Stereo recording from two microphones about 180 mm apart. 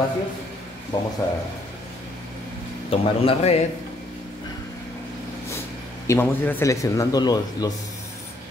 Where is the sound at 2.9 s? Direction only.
30° left (ahead or behind).